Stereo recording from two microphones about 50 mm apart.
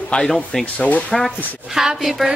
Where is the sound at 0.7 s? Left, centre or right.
Left.